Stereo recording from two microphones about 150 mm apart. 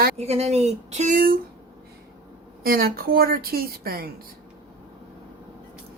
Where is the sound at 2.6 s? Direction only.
90° right.